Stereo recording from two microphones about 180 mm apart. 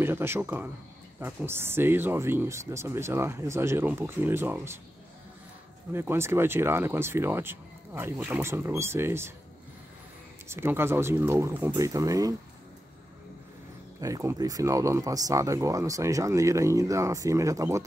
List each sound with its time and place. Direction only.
0.0 s speech: 15° right (ahead or behind)
5.9 s speech: 15° right (ahead or behind)
10.5 s speech: 10° right (ahead or behind)
14.0 s speech: 20° right (ahead or behind)